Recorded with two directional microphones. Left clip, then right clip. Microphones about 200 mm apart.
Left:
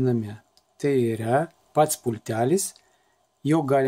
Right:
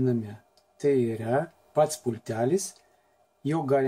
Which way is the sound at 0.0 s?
45° left (ahead or behind).